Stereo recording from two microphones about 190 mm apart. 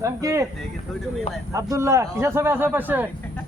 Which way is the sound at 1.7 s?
15° right (ahead or behind).